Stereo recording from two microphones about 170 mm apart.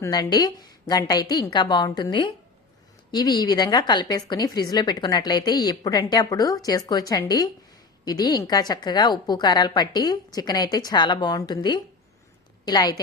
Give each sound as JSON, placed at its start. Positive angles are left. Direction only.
{"t": 0.0, "sound": "a woman's voice", "side_deg": 25}